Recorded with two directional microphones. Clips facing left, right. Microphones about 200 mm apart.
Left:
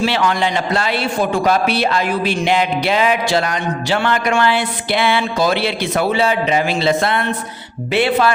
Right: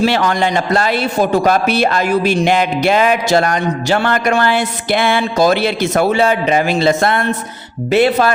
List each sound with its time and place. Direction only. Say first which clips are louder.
0.0 s a man's voice: right 3 dB; 45° right (ahead or behind)